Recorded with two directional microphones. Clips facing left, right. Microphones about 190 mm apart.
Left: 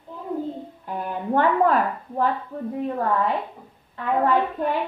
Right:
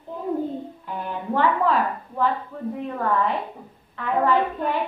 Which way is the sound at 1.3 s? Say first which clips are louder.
Left 2 dB; 50° left (ahead or behind).